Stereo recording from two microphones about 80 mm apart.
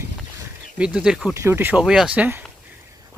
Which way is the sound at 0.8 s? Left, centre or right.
Centre.